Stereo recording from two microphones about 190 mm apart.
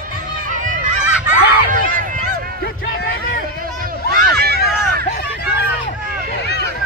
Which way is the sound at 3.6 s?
50° right (ahead or behind).